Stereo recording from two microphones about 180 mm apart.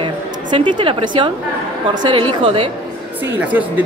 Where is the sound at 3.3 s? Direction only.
10° right (ahead or behind).